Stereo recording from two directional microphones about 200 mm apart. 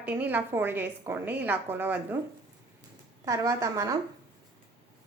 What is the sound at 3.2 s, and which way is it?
Speech, 15° right (ahead or behind).